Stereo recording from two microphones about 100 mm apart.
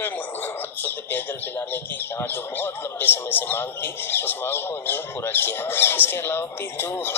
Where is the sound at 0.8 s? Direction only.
20° left (ahead or behind).